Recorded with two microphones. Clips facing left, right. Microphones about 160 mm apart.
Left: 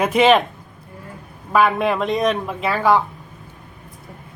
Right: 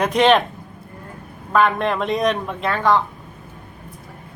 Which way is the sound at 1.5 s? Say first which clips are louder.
Left 1 dB; 5° left (ahead or behind).